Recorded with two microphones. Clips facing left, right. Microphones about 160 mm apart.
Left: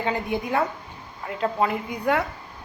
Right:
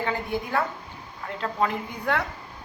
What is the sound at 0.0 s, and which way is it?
A woman's voice, 20° left (ahead or behind).